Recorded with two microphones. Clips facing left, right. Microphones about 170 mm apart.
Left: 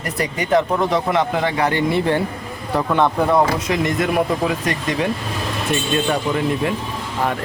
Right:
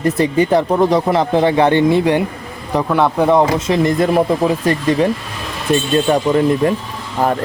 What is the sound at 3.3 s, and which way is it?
Speech, 25° right (ahead or behind).